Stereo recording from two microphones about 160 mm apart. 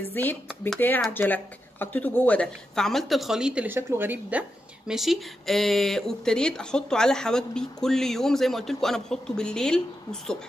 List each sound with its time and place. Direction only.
0.1 s speech: 10° left (ahead or behind)